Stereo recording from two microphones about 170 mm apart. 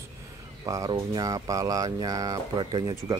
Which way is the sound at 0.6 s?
20° right (ahead or behind).